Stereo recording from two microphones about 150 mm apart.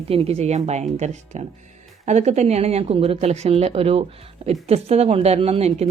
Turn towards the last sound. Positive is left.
turn(degrees=-45)  # may be behind; listen again after turning